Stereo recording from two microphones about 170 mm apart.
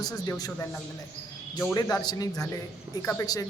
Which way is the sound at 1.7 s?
20° left (ahead or behind).